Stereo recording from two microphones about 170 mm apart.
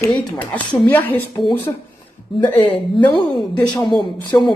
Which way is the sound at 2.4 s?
35° left (ahead or behind).